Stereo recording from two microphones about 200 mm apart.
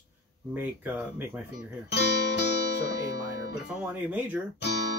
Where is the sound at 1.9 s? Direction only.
55° left (ahead or behind).